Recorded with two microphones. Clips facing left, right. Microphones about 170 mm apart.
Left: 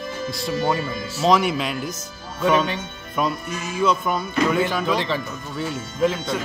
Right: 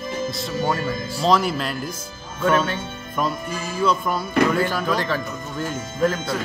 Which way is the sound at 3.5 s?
30° right (ahead or behind).